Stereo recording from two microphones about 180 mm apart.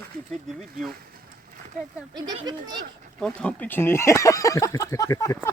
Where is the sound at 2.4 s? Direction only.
25° right (ahead or behind).